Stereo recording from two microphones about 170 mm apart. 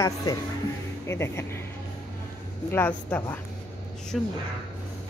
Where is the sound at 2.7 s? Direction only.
10° left (ahead or behind).